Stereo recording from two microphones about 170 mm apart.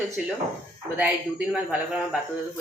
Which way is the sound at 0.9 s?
10° right (ahead or behind).